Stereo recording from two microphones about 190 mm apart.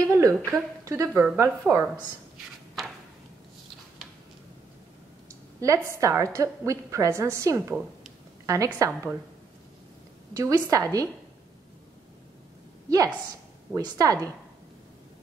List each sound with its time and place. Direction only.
0.0 s a sound: 15° right (ahead or behind)
0.5 s speech: 15° right (ahead or behind)
5.6 s a woman's voice: 15° right (ahead or behind)
10.3 s speech: 15° right (ahead or behind)
12.9 s a woman's voice: 15° right (ahead or behind)